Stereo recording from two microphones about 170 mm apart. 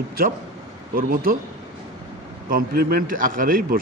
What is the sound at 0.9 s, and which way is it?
Speech, 55° right (ahead or behind).